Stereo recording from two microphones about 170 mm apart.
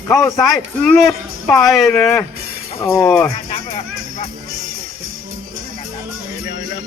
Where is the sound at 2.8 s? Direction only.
15° left (ahead or behind).